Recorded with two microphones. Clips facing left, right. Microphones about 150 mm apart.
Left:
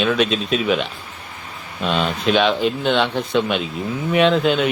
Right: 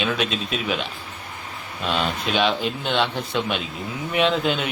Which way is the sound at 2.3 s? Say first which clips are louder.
Left 3 dB; 50° left (ahead or behind).